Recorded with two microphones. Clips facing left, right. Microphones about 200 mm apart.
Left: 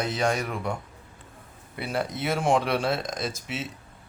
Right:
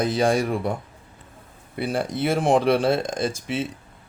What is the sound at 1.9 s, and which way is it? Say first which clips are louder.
Speech: right 4 dB; 30° right (ahead or behind).